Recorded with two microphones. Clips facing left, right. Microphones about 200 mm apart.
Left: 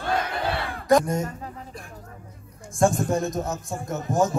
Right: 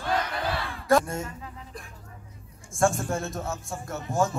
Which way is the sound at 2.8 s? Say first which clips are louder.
Left 4 dB; 15° left (ahead or behind).